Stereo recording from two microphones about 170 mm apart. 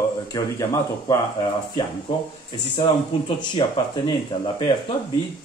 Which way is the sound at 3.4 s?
30° left (ahead or behind).